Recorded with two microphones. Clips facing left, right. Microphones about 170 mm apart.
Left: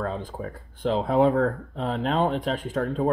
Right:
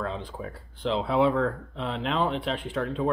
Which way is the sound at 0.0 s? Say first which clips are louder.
Left 3 dB; 45° left (ahead or behind).